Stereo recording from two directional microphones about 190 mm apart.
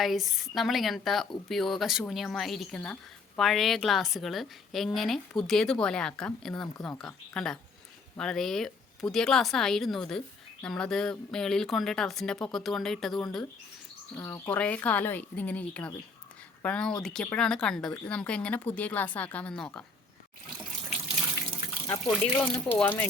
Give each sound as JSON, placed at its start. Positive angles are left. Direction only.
{"t": 0.0, "sound": "speech", "side_deg": 0}
{"t": 21.8, "sound": "speech", "side_deg": 20}
{"t": 22.1, "sound": "speech", "side_deg": 5}